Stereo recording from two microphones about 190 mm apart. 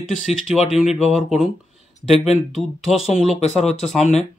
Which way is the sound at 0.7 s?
5° right (ahead or behind).